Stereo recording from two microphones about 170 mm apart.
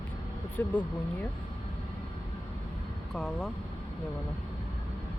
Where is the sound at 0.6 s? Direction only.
10° left (ahead or behind).